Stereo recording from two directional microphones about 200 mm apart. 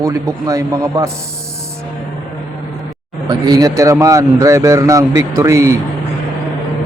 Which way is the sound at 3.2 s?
20° right (ahead or behind).